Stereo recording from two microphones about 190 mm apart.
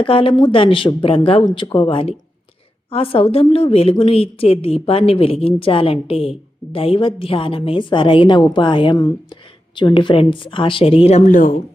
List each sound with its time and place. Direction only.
0.0 s a woman's voice: 30° left (ahead or behind); by 11.5 s 45° left (ahead or behind)